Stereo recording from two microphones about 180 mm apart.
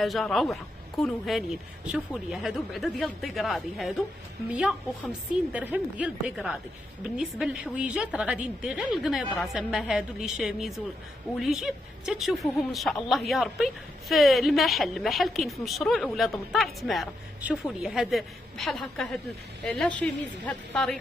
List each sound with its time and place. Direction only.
0.0 s a woman's voice: centre (ahead or behind)
5.5 s a woman's voice: 10° right (ahead or behind)